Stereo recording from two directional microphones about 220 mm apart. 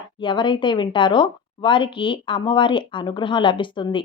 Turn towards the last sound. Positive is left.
turn(degrees=20)  # may be behind; listen again after turning